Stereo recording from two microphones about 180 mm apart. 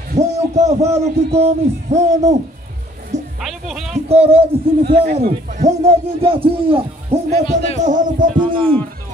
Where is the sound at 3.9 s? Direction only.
35° right (ahead or behind).